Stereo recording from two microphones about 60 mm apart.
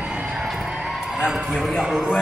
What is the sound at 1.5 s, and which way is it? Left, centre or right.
Speech, centre.